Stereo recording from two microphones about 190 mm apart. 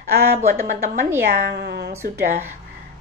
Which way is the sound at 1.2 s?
60° right (ahead or behind).